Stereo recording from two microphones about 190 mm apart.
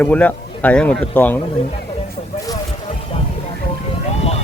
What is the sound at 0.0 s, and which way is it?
Speech, 5° left (ahead or behind).